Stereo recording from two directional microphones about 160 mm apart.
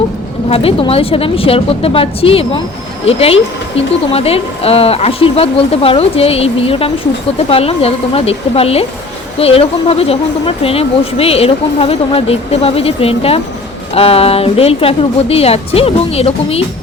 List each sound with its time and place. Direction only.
0.5 s speech: 35° left (ahead or behind)